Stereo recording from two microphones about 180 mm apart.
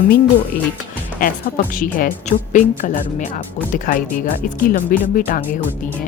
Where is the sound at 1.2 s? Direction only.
50° left (ahead or behind).